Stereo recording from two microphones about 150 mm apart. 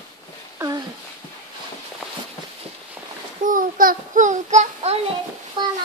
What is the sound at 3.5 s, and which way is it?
Child singing, 65° right (ahead or behind).